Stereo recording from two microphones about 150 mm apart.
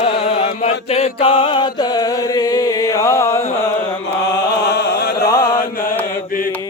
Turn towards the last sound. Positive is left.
turn(degrees=90)